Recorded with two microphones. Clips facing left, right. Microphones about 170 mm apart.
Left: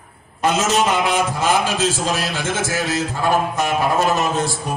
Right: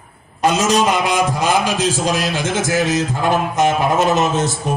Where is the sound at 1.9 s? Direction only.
40° right (ahead or behind).